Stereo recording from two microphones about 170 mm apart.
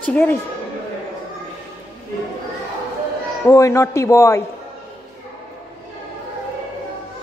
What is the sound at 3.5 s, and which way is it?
Speech, 20° left (ahead or behind).